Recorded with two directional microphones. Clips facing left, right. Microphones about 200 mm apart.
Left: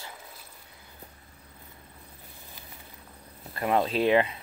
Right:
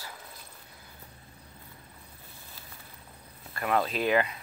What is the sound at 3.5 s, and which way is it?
Speech, 25° left (ahead or behind).